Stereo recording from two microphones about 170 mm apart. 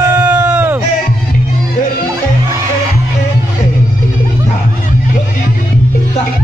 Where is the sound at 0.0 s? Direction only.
10° right (ahead or behind).